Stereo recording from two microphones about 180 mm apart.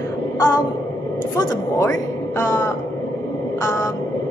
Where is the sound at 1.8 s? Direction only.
15° left (ahead or behind).